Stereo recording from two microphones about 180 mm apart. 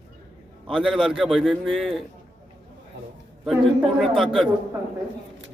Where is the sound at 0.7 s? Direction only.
5° right (ahead or behind).